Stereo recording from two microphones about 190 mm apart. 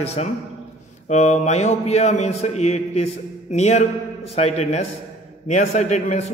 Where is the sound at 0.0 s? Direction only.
35° left (ahead or behind).